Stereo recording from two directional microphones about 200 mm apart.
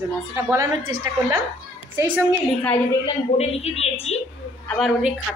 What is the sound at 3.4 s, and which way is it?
Speech, 30° left (ahead or behind).